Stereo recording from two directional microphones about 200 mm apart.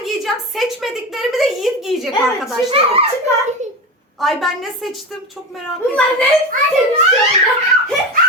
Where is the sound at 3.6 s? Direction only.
35° right (ahead or behind).